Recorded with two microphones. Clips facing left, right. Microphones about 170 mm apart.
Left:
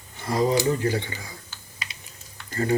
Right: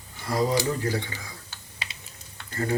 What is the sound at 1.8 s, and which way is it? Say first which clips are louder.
Typing: even; 30° right (ahead or behind).